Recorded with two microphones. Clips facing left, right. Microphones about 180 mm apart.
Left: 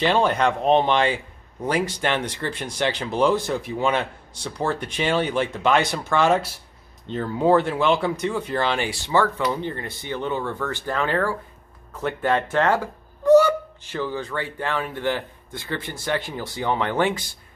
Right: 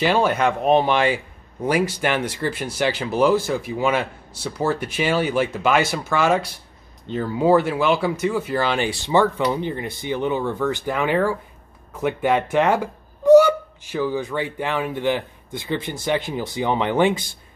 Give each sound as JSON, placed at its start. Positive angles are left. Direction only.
{"t": 0.0, "sound": "a man's voice", "side_deg": -5}
{"t": 8.7, "sound": "a man's voice", "side_deg": -20}